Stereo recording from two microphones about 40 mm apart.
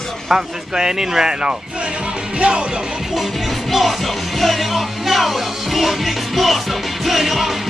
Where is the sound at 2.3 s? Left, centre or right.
Right.